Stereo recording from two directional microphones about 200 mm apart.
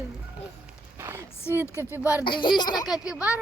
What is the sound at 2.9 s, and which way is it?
Speech, 5° right (ahead or behind).